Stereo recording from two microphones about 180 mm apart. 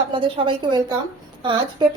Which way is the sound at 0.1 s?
30° right (ahead or behind).